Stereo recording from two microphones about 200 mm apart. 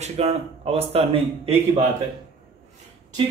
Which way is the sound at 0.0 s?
30° right (ahead or behind).